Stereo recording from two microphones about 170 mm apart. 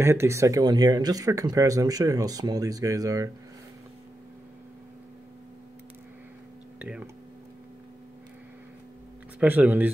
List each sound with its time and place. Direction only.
0.0 s speech: 15° right (ahead or behind)
6.8 s speech: 10° right (ahead or behind)
9.4 s speech: 10° right (ahead or behind)